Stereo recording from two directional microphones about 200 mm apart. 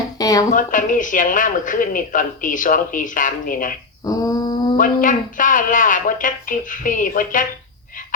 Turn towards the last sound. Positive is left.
turn(degrees=40)  # may be behind; listen again after turning